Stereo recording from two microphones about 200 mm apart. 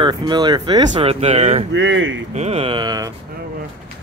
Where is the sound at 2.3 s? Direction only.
30° right (ahead or behind).